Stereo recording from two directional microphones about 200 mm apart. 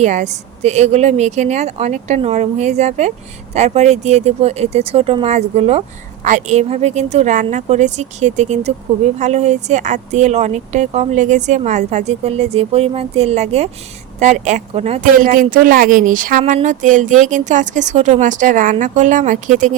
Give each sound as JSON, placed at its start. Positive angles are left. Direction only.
{"t": 0.0, "sound": "speech", "side_deg": -35}